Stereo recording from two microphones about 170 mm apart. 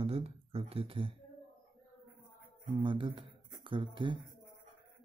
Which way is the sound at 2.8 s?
30° right (ahead or behind).